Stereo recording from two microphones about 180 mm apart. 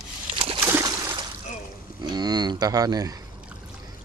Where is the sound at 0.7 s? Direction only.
15° right (ahead or behind).